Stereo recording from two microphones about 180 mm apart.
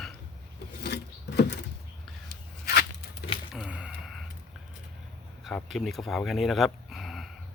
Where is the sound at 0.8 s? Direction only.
70° left (ahead or behind).